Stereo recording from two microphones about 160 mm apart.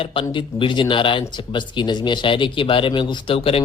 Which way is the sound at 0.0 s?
35° left (ahead or behind).